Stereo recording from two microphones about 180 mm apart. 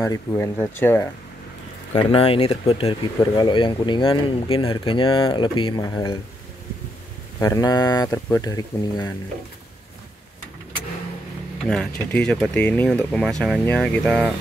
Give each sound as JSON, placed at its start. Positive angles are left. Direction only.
{"t": 0.0, "sound": "speech", "side_deg": 15}
{"t": 2.0, "sound": "speech", "side_deg": 30}
{"t": 7.3, "sound": "speech", "side_deg": 15}
{"t": 11.6, "sound": "speech", "side_deg": 5}